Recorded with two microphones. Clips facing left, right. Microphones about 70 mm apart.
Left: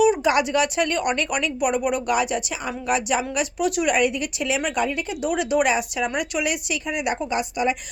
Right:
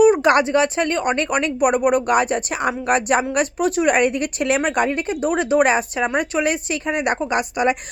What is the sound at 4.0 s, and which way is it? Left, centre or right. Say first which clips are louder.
Speech: right 3 dB; right.